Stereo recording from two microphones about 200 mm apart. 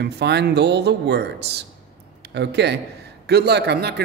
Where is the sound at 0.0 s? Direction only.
55° right (ahead or behind).